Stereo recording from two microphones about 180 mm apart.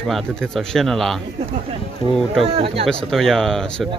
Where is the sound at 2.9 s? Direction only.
Centre (ahead or behind).